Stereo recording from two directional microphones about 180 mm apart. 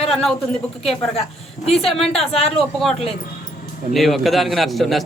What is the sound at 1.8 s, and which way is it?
Speech, centre (ahead or behind).